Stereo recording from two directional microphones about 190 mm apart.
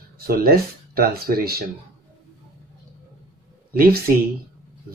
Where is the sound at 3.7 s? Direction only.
50° right (ahead or behind).